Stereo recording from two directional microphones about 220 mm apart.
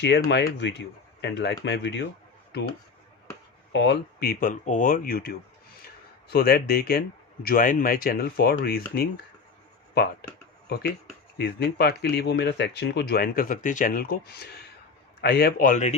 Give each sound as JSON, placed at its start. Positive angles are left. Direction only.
{"t": 0.0, "sound": "speech", "side_deg": 50}
{"t": 3.7, "sound": "speech", "side_deg": 50}
{"t": 6.3, "sound": "speech", "side_deg": 45}